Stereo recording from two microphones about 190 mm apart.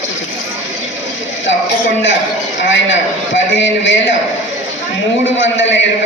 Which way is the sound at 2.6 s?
75° left (ahead or behind).